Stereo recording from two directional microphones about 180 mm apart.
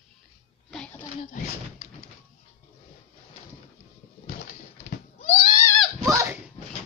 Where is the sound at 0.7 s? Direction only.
5° left (ahead or behind).